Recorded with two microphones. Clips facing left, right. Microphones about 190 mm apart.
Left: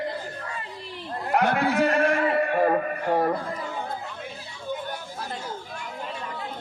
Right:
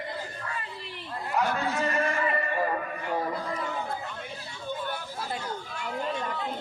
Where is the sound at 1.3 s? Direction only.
65° left (ahead or behind).